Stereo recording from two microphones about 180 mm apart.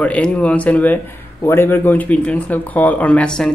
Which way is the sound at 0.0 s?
5° left (ahead or behind).